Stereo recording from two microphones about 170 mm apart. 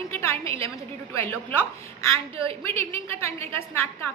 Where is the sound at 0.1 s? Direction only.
15° left (ahead or behind).